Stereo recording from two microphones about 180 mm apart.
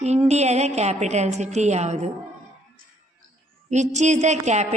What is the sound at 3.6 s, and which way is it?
A woman's voice, 40° right (ahead or behind).